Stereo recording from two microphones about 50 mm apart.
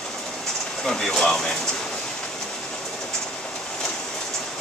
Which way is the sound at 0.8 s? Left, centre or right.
Centre.